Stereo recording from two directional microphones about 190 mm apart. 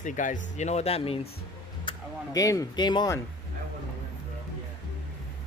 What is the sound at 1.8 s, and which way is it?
Speech, 20° left (ahead or behind).